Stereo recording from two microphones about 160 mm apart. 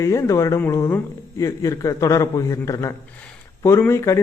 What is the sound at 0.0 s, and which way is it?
A man's voice, 20° left (ahead or behind).